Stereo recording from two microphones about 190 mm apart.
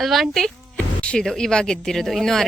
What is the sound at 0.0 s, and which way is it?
Speech, centre (ahead or behind).